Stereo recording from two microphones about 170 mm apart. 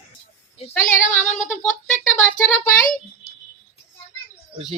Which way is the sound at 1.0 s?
45° left (ahead or behind).